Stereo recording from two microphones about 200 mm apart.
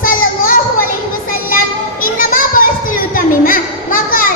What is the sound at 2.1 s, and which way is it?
Children playing, 45° left (ahead or behind).